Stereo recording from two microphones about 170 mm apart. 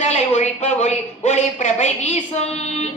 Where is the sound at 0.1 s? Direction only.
40° left (ahead or behind).